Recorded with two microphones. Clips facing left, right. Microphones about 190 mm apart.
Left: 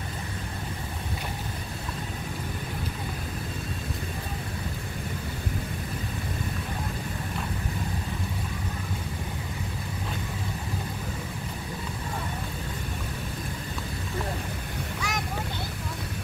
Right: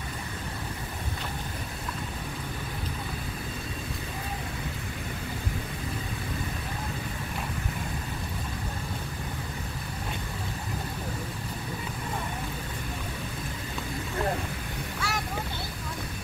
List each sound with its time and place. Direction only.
15.0 s vehicle: 15° left (ahead or behind)